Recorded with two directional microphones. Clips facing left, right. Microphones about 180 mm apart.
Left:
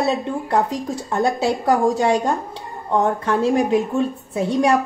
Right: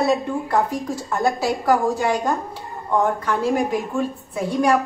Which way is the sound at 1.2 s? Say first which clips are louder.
Left 2 dB; 25° left (ahead or behind).